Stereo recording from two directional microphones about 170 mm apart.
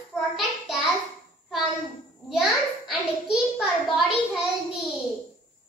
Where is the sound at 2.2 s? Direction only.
Centre (ahead or behind).